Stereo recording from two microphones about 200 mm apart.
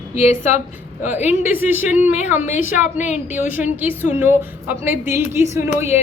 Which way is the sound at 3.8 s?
10° right (ahead or behind).